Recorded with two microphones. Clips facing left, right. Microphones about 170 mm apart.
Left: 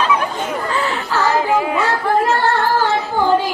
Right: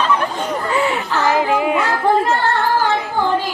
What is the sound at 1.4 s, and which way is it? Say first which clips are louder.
Music: even; 20° right (ahead or behind).